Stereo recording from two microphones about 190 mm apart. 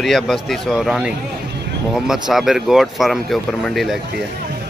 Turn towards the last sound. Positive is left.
turn(degrees=0)  # may be behind; listen again after turning